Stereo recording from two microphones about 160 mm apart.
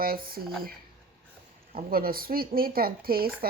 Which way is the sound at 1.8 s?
65° right (ahead or behind).